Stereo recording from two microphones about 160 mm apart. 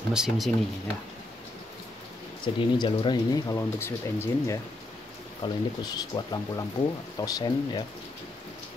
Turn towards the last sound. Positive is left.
turn(degrees=25)  # may be behind; listen again after turning